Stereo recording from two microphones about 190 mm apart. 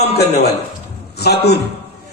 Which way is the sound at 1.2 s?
60° left (ahead or behind).